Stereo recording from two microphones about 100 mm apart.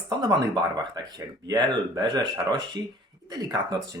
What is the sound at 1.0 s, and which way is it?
Speech, 40° right (ahead or behind).